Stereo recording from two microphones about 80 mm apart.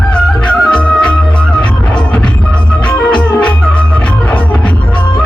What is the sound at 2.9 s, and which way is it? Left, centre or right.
Organ, centre.